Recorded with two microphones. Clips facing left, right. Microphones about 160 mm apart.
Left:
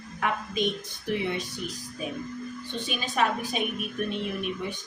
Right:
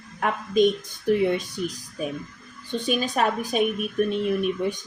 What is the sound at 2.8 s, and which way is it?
Speech, 45° right (ahead or behind).